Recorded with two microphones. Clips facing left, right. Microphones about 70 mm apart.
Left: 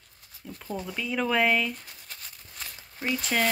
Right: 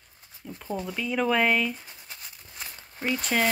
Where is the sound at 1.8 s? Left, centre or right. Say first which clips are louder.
Right 1 dB; centre.